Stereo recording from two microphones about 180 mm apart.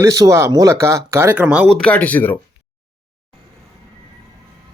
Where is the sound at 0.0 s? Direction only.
20° right (ahead or behind).